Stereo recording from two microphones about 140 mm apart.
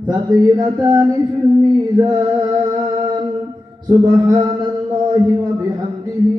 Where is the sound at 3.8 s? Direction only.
35° right (ahead or behind).